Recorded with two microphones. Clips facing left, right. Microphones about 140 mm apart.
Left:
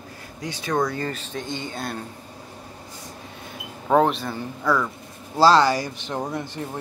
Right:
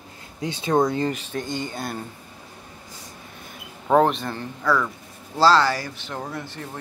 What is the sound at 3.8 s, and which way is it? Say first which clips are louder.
Speech: right 1 dB; centre (ahead or behind).